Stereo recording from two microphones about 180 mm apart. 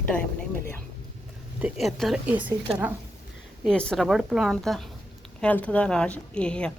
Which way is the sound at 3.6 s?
5° left (ahead or behind).